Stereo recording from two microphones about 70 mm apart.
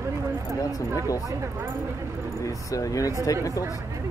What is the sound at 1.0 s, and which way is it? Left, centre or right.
Speech, left.